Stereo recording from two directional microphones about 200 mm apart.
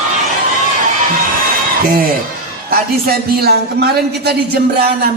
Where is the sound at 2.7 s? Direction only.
50° right (ahead or behind).